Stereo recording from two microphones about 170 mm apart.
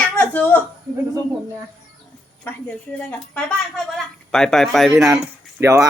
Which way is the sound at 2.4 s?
10° left (ahead or behind).